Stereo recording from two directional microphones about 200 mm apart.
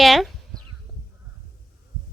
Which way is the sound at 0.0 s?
Centre (ahead or behind).